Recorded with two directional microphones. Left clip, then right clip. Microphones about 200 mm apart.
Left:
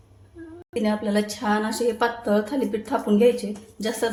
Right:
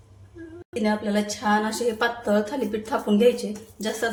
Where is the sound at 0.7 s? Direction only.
25° left (ahead or behind).